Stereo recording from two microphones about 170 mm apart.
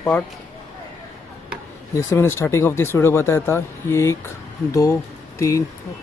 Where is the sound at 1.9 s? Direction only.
15° left (ahead or behind).